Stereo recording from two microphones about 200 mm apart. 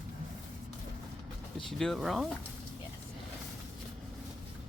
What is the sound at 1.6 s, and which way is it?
Speech, centre (ahead or behind).